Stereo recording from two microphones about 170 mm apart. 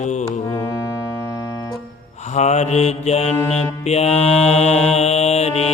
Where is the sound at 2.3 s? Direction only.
40° left (ahead or behind).